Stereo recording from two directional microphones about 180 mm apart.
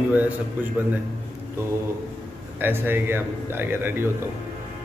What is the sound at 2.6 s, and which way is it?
A man's voice, 10° right (ahead or behind).